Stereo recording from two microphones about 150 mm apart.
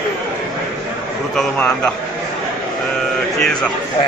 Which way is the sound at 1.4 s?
5° left (ahead or behind).